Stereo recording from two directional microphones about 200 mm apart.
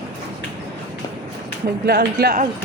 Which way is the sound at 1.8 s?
50° right (ahead or behind).